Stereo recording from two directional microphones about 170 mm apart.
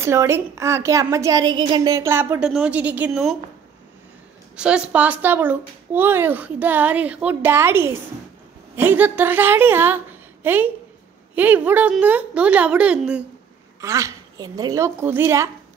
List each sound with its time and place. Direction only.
0.0 s speech: 15° right (ahead or behind)
4.6 s speech: 5° right (ahead or behind)
13.7 s speech: 20° right (ahead or behind)